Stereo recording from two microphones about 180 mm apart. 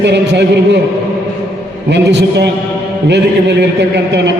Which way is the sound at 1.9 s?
75° right (ahead or behind).